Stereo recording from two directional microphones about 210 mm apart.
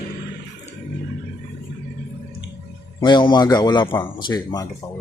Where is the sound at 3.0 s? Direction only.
20° left (ahead or behind).